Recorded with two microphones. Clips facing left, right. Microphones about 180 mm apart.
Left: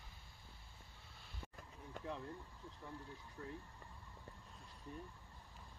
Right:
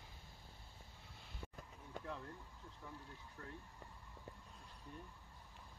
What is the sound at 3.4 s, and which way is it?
Speech, 15° left (ahead or behind).